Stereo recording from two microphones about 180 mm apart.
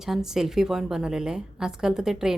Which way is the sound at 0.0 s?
5° right (ahead or behind).